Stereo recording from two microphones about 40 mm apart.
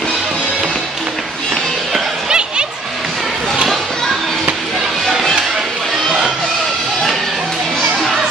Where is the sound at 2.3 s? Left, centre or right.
Centre.